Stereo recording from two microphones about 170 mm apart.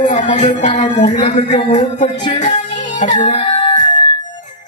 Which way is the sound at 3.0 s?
45° left (ahead or behind).